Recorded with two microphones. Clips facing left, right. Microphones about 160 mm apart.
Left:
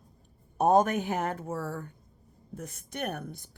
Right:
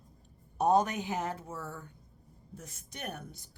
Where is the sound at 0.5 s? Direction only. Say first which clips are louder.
Left 4 dB; 50° left (ahead or behind).